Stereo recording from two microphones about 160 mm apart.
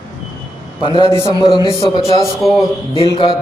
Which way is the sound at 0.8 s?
30° left (ahead or behind).